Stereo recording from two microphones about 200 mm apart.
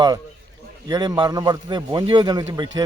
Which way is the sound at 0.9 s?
20° right (ahead or behind).